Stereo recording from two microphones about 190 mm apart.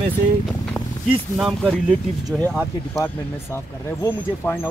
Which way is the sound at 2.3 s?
15° right (ahead or behind).